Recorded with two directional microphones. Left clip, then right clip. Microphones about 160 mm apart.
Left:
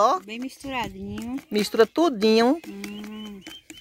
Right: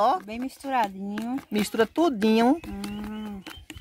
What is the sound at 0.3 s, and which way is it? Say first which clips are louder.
Speech: right 3 dB; 55° right (ahead or behind).